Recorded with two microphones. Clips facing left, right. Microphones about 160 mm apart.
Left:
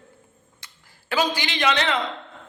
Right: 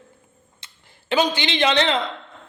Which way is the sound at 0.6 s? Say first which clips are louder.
Left 2 dB; 25° right (ahead or behind).